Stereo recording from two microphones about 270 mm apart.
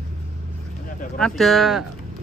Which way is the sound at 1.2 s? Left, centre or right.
Centre.